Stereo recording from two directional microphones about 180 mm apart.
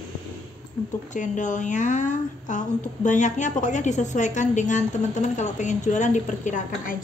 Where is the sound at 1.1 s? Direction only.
45° left (ahead or behind).